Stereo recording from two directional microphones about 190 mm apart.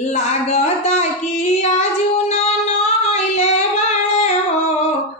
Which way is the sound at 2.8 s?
35° left (ahead or behind).